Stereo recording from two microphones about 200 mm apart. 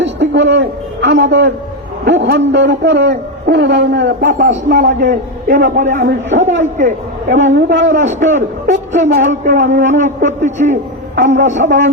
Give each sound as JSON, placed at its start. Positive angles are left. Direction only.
{"t": 0.0, "sound": "a man's voice", "side_deg": -60}
{"t": 4.2, "sound": "a man's voice", "side_deg": -40}
{"t": 7.5, "sound": "a man's voice", "side_deg": -65}
{"t": 8.9, "sound": "a man's voice", "side_deg": -40}